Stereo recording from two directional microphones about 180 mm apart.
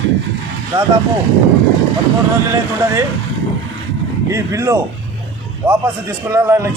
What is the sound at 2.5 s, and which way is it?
Speech, 15° right (ahead or behind).